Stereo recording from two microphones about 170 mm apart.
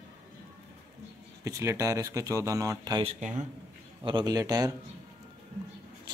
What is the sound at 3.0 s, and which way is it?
Speech, 45° right (ahead or behind).